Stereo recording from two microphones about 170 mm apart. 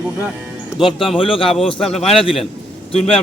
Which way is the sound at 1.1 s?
30° left (ahead or behind).